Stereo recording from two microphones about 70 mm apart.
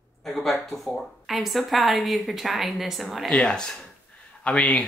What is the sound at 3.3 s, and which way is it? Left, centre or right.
Speech, centre.